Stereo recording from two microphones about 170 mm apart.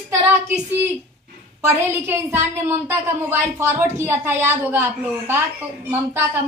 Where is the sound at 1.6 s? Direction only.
15° right (ahead or behind).